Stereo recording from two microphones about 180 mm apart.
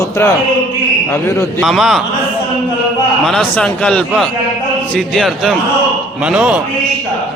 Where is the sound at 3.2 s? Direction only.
5° left (ahead or behind).